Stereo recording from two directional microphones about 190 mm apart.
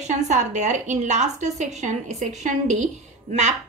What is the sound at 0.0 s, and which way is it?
A woman's voice, 40° right (ahead or behind).